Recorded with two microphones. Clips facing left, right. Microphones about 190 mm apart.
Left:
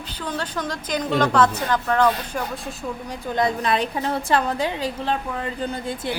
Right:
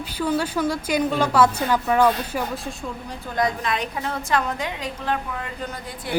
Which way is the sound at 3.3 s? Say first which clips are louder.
Left 2 dB; 30° left (ahead or behind).